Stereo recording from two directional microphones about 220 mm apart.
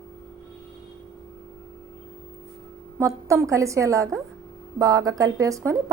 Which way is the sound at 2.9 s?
10° right (ahead or behind).